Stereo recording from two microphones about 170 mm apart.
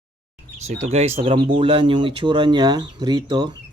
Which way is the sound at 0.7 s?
45° right (ahead or behind).